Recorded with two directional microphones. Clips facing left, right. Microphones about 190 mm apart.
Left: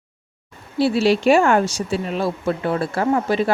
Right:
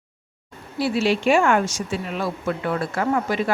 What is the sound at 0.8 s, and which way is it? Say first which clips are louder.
Speech: left 4 dB; 30° left (ahead or behind).